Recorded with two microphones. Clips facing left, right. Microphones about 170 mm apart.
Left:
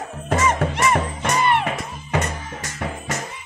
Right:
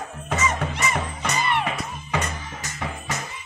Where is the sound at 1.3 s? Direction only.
50° left (ahead or behind).